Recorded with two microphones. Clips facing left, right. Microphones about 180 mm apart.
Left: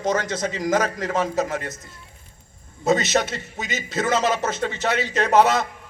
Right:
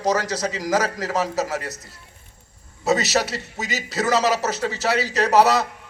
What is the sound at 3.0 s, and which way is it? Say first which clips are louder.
Speech: even; 40° right (ahead or behind).